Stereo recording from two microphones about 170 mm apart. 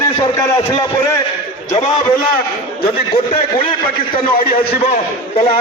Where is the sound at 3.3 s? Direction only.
30° left (ahead or behind).